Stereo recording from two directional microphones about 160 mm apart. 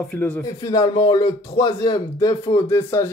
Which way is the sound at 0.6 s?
25° left (ahead or behind).